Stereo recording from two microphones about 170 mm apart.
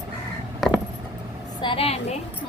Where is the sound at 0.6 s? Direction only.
Centre (ahead or behind).